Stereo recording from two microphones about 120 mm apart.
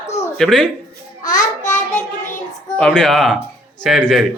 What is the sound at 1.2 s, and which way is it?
Child singing, 90° left.